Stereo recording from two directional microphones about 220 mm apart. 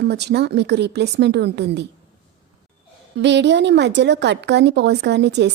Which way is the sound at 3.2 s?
50° right (ahead or behind).